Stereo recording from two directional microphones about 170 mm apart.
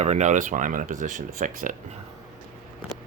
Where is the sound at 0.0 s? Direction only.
45° right (ahead or behind).